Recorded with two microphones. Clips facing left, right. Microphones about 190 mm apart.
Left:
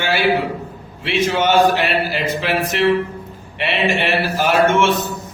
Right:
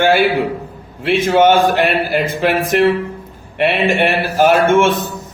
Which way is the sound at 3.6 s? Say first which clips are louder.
Right 5 dB; 50° right (ahead or behind).